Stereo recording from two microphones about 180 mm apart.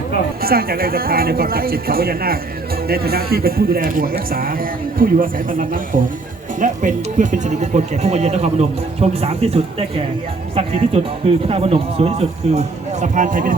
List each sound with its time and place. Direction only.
0.4 s speech: 55° right (ahead or behind)